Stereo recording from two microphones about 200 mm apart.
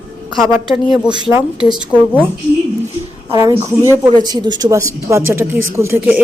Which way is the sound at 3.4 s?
15° right (ahead or behind).